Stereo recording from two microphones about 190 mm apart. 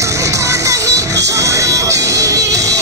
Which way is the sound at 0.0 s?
15° right (ahead or behind).